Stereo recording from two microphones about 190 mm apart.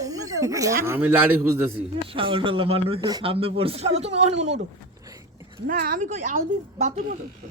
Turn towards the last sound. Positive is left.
turn(degrees=-40)  # may be behind; listen again after turning